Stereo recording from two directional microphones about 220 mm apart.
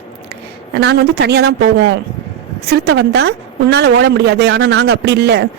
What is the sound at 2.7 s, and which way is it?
A woman's voice, 50° right (ahead or behind).